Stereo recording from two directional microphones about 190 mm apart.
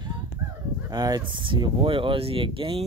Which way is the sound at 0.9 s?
20° right (ahead or behind).